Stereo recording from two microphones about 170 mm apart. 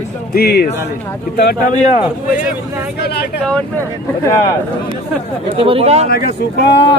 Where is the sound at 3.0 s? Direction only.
70° left (ahead or behind).